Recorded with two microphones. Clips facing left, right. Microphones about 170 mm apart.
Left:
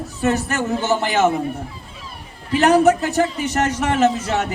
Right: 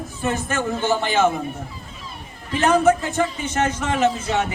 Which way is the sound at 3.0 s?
70° left (ahead or behind).